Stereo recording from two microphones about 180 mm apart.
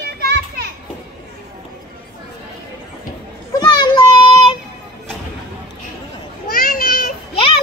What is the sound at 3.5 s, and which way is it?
Child singing, 25° left (ahead or behind).